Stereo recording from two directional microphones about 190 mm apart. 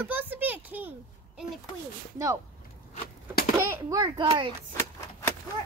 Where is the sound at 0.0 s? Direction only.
10° right (ahead or behind).